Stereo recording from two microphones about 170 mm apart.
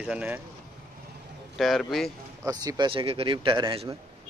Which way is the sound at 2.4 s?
20° right (ahead or behind).